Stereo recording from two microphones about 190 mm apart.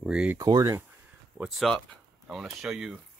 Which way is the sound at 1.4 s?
Centre (ahead or behind).